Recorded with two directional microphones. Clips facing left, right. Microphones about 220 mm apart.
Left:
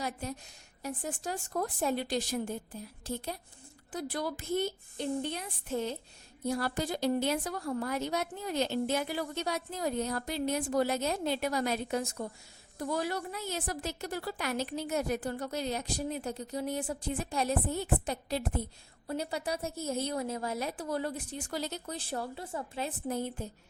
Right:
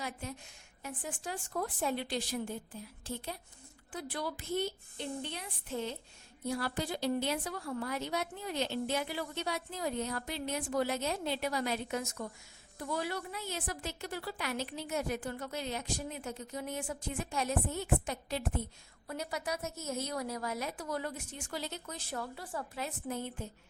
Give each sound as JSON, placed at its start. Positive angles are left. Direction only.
{"t": 0.0, "sound": "a woman's voice", "side_deg": 40}